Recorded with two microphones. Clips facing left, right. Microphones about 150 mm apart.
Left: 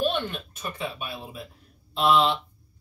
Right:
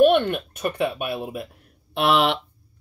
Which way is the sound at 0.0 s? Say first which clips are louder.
Right 11 dB; 60° right (ahead or behind).